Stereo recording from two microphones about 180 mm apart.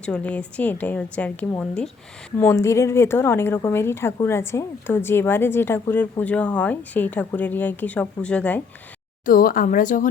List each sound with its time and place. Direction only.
0.0 s a woman's voice: 5° left (ahead or behind)
9.2 s speech: 50° left (ahead or behind)